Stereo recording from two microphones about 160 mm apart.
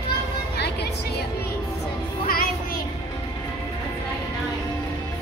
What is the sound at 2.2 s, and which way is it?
Music, 70° left (ahead or behind).